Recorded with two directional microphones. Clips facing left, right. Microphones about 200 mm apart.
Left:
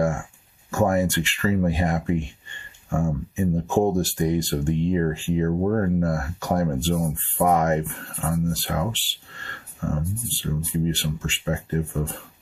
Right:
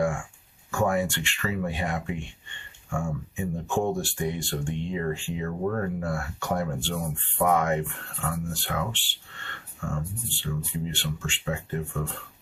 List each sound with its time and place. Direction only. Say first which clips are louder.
0.0 s speech: left 3 dB; 40° left (ahead or behind)